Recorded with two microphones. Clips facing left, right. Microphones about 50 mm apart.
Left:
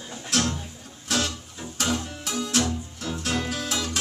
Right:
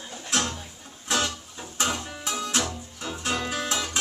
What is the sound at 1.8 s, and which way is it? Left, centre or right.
Music, right.